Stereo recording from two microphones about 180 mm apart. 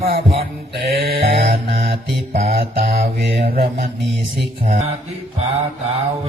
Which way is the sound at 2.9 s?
65° right (ahead or behind).